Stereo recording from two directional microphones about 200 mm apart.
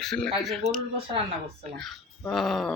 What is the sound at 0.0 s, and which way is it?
Speech, centre (ahead or behind).